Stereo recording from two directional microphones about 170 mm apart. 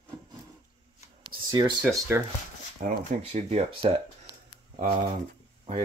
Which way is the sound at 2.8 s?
45° right (ahead or behind).